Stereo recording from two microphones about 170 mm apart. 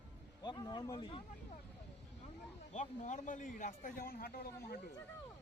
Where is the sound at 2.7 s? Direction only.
45° left (ahead or behind); by 4.8 s 60° left (ahead or behind).